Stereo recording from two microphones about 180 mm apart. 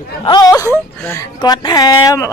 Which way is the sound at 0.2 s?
25° left (ahead or behind).